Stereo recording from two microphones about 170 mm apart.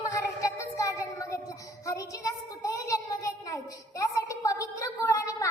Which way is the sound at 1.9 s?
20° left (ahead or behind).